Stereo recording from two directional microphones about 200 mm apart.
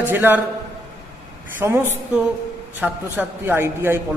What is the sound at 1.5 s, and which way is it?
A man's voice, 10° right (ahead or behind).